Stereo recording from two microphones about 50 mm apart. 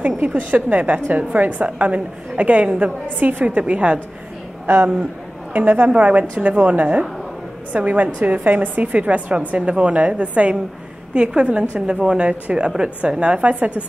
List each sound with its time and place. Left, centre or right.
0.3 s a woman's voice: right
4.6 s a woman's voice: right